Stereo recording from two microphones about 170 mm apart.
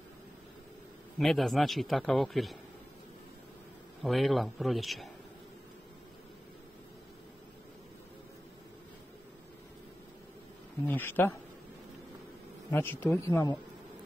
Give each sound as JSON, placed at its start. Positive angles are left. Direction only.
{"t": 1.1, "sound": "a man's voice", "side_deg": 0}
{"t": 4.0, "sound": "a man's voice", "side_deg": 0}
{"t": 10.9, "sound": "speech", "side_deg": 10}
{"t": 12.7, "sound": "speech", "side_deg": 15}